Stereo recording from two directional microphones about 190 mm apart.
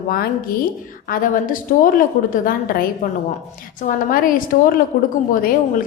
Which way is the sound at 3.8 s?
45° left (ahead or behind).